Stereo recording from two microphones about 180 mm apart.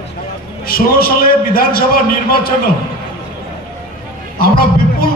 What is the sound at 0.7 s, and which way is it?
A man's voice, 55° left (ahead or behind).